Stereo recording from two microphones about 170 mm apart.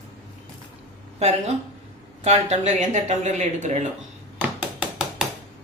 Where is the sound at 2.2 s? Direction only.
40° right (ahead or behind).